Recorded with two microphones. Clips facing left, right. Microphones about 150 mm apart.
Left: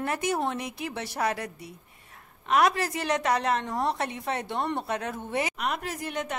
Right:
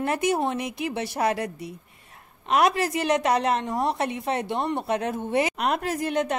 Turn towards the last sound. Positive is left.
turn(degrees=-90)